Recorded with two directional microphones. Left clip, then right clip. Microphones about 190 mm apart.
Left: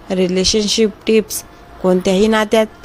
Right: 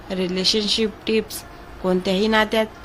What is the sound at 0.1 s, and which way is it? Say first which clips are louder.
A woman's voice: left 6 dB; 35° left (ahead or behind).